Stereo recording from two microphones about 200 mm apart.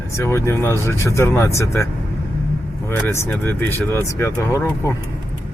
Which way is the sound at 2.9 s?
10° left (ahead or behind).